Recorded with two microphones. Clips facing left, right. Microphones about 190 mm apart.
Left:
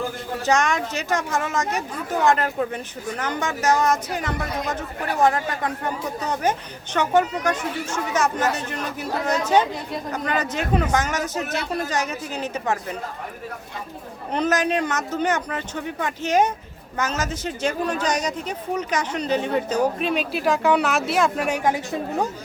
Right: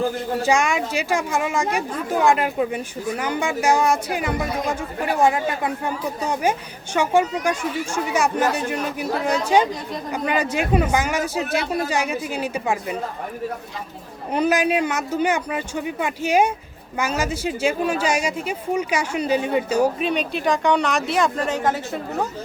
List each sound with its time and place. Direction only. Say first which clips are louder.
0.4 s speech: even; 10° right (ahead or behind)
14.3 s speech: right 2 dB; 10° right (ahead or behind); by 21.8 s 10° left (ahead or behind)